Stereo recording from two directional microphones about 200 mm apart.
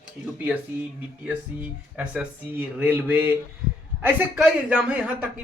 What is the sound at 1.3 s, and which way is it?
Speech, 5° right (ahead or behind).